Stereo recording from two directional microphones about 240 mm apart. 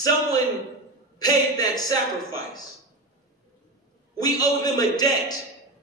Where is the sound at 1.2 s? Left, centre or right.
Centre.